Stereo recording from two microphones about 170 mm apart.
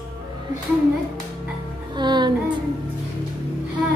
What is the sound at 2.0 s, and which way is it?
Speech, 25° right (ahead or behind).